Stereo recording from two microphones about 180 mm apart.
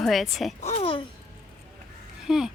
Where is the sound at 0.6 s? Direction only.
35° left (ahead or behind).